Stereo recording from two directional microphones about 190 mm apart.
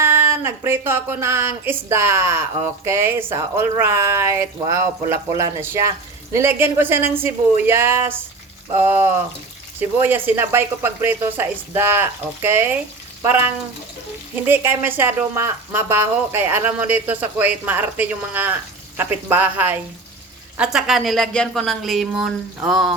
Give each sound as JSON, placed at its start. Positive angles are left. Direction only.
{"t": 0.0, "sound": "speech", "side_deg": -10}
{"t": 14.4, "sound": "speech", "side_deg": -10}